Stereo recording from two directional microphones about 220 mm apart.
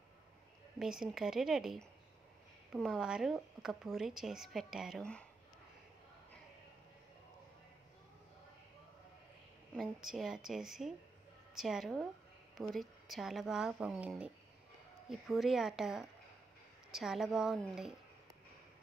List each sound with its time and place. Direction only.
0.7 s speech: centre (ahead or behind)
9.8 s speech: centre (ahead or behind)